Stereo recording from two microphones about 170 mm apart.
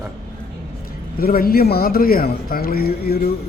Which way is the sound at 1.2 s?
60° left (ahead or behind).